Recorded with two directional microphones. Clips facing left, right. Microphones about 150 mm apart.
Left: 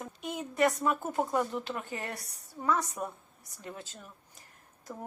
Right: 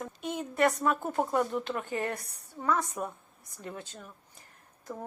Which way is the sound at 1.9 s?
40° right (ahead or behind).